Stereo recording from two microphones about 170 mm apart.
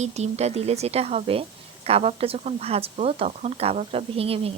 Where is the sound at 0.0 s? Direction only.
40° right (ahead or behind).